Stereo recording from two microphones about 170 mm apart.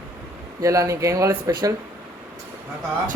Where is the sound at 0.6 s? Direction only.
20° right (ahead or behind).